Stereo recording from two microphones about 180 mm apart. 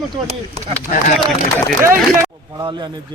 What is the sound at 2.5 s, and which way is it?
Speech, 20° right (ahead or behind).